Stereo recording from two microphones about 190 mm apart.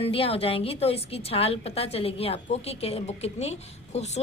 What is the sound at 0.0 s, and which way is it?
A woman's voice, 30° left (ahead or behind).